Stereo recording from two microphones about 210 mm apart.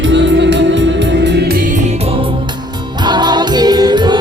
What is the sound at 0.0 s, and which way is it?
Music, 60° right (ahead or behind).